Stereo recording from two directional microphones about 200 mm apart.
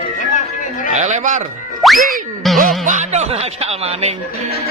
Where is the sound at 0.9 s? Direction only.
35° right (ahead or behind).